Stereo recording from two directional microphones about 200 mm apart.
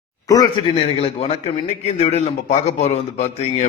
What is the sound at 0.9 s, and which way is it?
A man's voice, 30° left (ahead or behind).